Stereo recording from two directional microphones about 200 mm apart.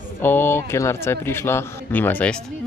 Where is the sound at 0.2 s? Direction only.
10° left (ahead or behind).